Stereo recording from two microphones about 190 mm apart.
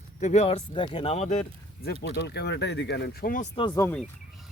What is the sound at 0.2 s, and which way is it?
Speech, 35° left (ahead or behind).